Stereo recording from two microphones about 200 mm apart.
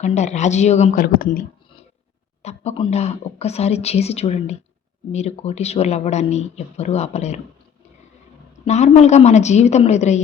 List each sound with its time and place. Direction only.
0.0 s speech: 35° left (ahead or behind)
2.4 s speech: 35° left (ahead or behind)
8.6 s speech: 35° left (ahead or behind)